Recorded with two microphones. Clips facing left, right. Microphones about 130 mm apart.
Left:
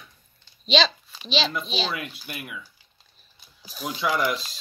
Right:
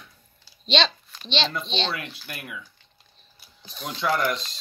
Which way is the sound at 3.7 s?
5° left (ahead or behind).